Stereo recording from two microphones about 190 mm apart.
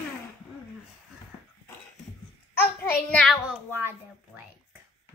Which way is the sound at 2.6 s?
10° left (ahead or behind).